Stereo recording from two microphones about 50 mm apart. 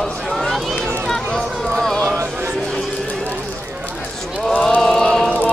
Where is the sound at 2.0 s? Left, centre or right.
Right.